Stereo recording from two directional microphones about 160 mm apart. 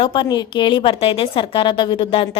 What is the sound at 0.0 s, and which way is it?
A woman's voice, 30° left (ahead or behind).